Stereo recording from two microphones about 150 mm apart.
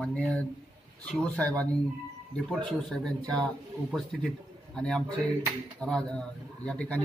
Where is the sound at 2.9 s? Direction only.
5° left (ahead or behind).